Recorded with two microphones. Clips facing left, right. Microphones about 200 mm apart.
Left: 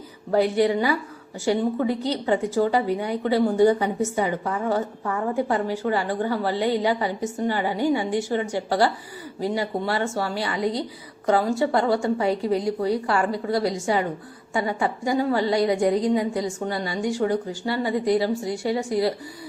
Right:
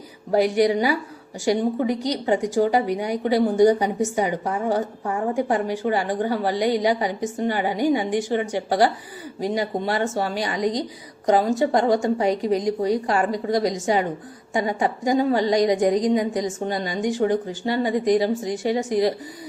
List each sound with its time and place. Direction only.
0.3 s a woman's voice: 15° right (ahead or behind)